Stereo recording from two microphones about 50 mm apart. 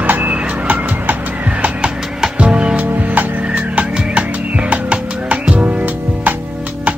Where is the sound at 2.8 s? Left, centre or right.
Right.